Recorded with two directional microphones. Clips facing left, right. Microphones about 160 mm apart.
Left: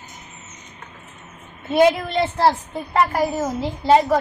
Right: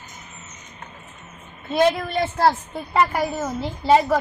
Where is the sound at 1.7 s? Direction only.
10° left (ahead or behind).